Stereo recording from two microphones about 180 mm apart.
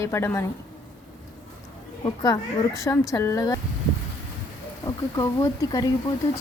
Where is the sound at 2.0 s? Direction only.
20° left (ahead or behind).